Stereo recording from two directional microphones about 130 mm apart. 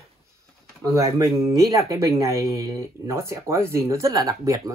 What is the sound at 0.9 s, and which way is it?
Speech, 25° right (ahead or behind).